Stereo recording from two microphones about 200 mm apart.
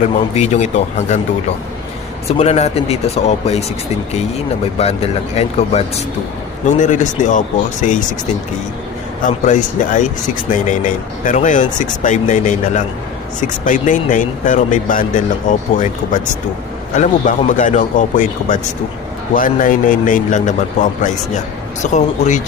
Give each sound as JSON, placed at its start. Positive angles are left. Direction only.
{"t": 0.3, "sound": "speech", "side_deg": 35}
{"t": 2.4, "sound": "speech", "side_deg": 30}
{"t": 4.8, "sound": "speech", "side_deg": 30}
{"t": 9.2, "sound": "speech", "side_deg": 35}